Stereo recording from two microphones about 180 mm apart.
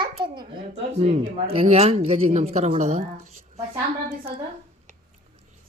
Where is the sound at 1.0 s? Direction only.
35° right (ahead or behind).